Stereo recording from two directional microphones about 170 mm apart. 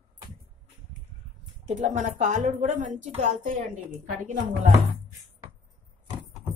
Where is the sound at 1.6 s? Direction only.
45° right (ahead or behind).